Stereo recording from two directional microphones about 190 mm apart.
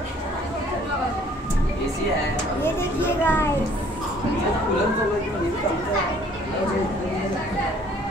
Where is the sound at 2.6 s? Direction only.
10° left (ahead or behind).